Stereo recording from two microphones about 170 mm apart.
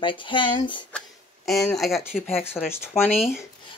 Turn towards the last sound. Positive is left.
turn(degrees=-5)  # may be behind; listen again after turning